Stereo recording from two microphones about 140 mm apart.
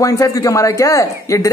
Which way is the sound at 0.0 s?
25° left (ahead or behind).